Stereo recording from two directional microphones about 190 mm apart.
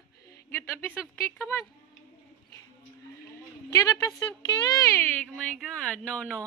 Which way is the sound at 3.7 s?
20° left (ahead or behind).